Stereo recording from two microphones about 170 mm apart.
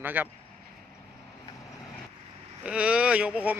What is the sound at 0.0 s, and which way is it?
Speech, 10° right (ahead or behind).